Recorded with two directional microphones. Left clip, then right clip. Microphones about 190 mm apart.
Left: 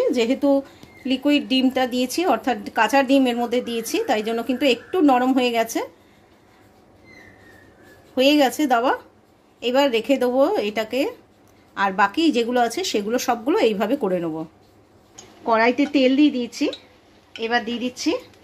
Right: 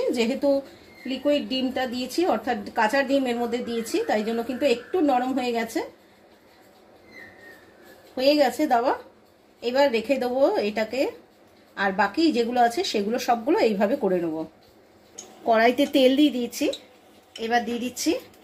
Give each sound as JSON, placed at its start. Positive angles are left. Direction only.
{"t": 0.1, "sound": "a woman's voice", "side_deg": 60}
{"t": 8.2, "sound": "speech", "side_deg": 65}
{"t": 15.4, "sound": "speech", "side_deg": 40}